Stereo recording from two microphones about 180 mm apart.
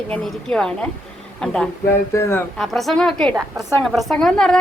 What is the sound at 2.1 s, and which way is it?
Speech, 15° left (ahead or behind).